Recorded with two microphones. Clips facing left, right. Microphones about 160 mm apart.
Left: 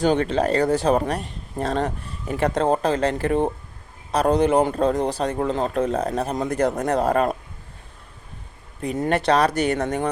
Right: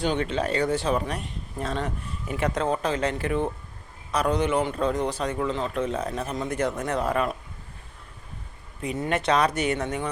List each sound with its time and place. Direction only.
0.0 s speech: 40° left (ahead or behind)
8.8 s speech: 40° left (ahead or behind)